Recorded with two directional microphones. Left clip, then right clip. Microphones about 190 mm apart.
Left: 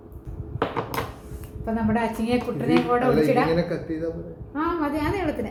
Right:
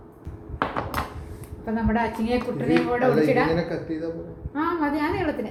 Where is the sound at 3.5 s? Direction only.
5° right (ahead or behind).